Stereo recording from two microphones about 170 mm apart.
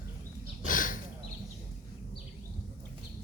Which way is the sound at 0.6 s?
50° left (ahead or behind).